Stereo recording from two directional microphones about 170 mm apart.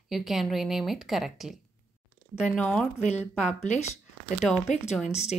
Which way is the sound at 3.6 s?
45° left (ahead or behind).